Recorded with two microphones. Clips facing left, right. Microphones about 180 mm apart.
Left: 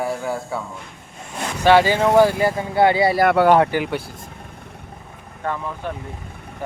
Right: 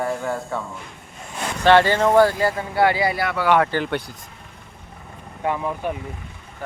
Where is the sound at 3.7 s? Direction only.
5° left (ahead or behind).